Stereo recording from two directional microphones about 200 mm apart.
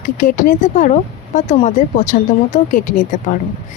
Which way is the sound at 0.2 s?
40° left (ahead or behind).